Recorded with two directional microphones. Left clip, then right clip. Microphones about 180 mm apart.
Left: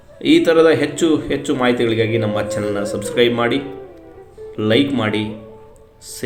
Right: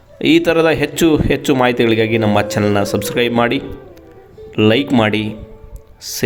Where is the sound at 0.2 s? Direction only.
55° right (ahead or behind).